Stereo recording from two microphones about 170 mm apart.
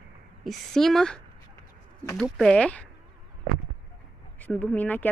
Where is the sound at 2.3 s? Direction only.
5° left (ahead or behind).